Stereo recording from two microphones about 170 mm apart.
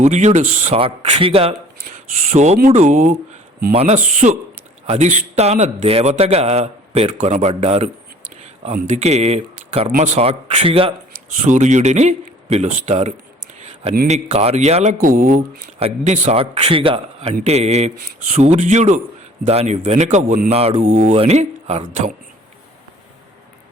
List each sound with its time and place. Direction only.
0.0 s a man's voice: 45° right (ahead or behind)
11.1 s a man's voice: 45° right (ahead or behind)
14.9 s a man's voice: 50° right (ahead or behind)